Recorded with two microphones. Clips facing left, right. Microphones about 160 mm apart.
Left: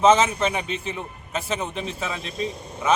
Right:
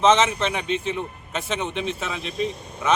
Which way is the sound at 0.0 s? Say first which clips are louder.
Left 1 dB; 10° left (ahead or behind).